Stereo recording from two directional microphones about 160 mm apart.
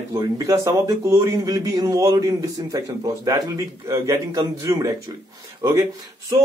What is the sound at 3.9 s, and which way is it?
A man's voice, 20° right (ahead or behind).